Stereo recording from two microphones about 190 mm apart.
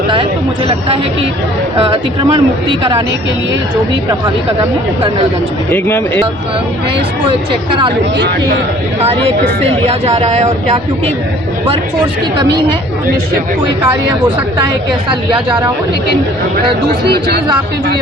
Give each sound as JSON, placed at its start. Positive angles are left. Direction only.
{"t": 1.8, "sound": "speech", "side_deg": -25}
{"t": 9.6, "sound": "speech", "side_deg": -35}
{"t": 17.1, "sound": "speech", "side_deg": -55}